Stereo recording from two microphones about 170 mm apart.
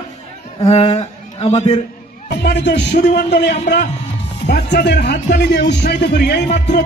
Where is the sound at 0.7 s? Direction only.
35° left (ahead or behind).